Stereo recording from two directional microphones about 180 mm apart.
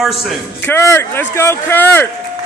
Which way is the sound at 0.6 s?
10° left (ahead or behind).